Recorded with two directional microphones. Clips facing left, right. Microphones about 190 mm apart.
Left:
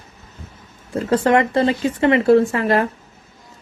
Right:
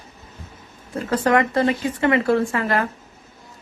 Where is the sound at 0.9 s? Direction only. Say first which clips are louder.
Left 3 dB; 25° left (ahead or behind).